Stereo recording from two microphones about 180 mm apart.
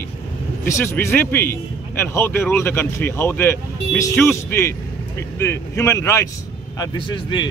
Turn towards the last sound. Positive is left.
turn(degrees=25)  # may be behind; listen again after turning